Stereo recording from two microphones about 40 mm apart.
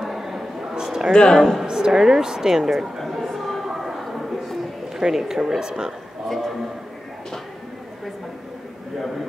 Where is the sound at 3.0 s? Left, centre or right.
Centre.